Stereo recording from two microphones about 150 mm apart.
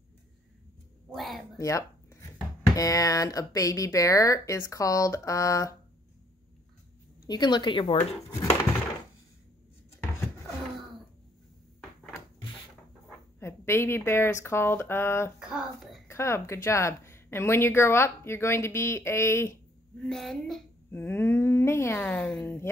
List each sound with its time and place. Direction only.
1.1 s a sound: centre (ahead or behind)
1.6 s speech: 20° left (ahead or behind)
7.2 s speech: 30° left (ahead or behind)
13.4 s speech: 15° left (ahead or behind)
15.3 s child singing: 5° right (ahead or behind)
16.1 s speech: 15° left (ahead or behind)
20.0 s a woman's voice: centre (ahead or behind)
20.9 s speech: 15° left (ahead or behind)
22.4 s speech: 15° left (ahead or behind)